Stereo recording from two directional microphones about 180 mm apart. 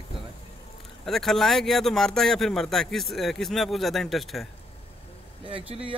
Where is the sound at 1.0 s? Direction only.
Centre (ahead or behind).